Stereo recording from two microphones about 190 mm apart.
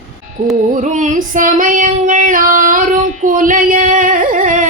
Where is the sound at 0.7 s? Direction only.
40° right (ahead or behind).